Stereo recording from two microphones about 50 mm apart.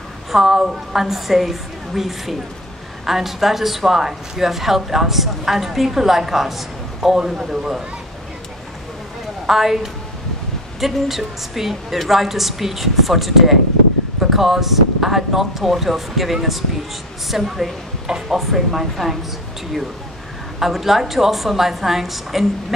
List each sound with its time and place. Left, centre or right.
0.3 s speech: centre
9.5 s speech: centre
10.8 s speech: centre
20.5 s speech: centre